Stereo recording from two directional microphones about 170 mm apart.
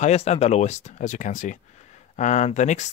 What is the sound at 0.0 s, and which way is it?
Speech, 40° left (ahead or behind).